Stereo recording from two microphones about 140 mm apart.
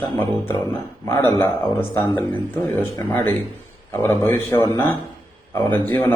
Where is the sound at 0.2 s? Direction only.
15° left (ahead or behind).